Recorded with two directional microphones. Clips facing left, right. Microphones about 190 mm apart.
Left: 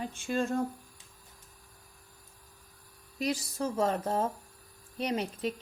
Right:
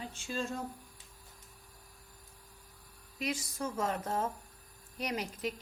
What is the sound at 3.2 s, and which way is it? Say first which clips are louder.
A woman's voice: left 5 dB; 35° left (ahead or behind).